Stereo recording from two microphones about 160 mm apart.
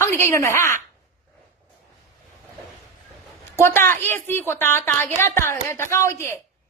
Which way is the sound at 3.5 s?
15° left (ahead or behind).